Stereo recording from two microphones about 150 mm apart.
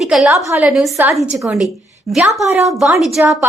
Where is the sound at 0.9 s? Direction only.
20° right (ahead or behind).